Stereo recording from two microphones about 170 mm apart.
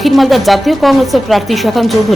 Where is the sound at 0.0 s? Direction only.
Centre (ahead or behind).